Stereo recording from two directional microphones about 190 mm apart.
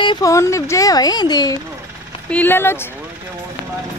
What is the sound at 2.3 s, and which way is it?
Speech, 10° left (ahead or behind).